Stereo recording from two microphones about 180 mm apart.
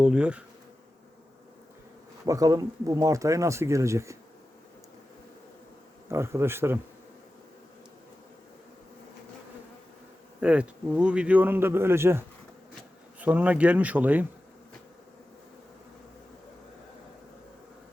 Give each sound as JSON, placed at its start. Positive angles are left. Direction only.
{"t": 0.0, "sound": "speech", "side_deg": -5}
{"t": 2.2, "sound": "speech", "side_deg": -20}
{"t": 6.1, "sound": "speech", "side_deg": -15}
{"t": 10.4, "sound": "speech", "side_deg": -5}